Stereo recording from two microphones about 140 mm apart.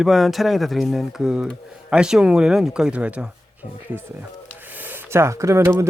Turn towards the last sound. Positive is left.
turn(degrees=-20)  # may be behind; listen again after turning